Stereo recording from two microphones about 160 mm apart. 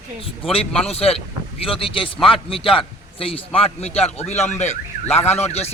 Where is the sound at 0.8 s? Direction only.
40° left (ahead or behind).